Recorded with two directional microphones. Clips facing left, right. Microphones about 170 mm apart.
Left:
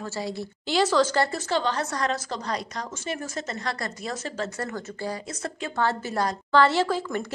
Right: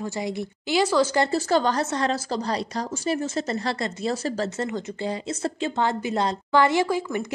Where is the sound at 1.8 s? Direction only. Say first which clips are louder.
Right 3 dB; 30° right (ahead or behind).